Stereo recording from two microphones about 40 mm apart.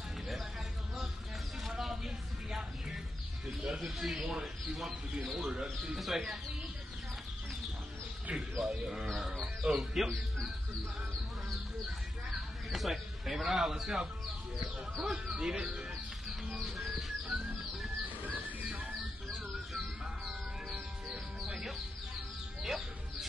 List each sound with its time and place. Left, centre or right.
1.7 s a sound: centre
3.4 s mouse: centre
4.1 s a sound: centre
5.2 s speech: centre
8.5 s bird: centre
9.4 s music: centre
9.8 s speech: centre
12.4 s bird: centre
15.0 s speech: centre
16.6 s bird: centre
18.3 s a sound: right
21.5 s music: centre